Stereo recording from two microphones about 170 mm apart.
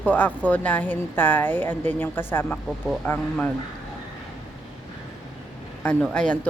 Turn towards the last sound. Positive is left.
turn(degrees=5)  # may be behind; listen again after turning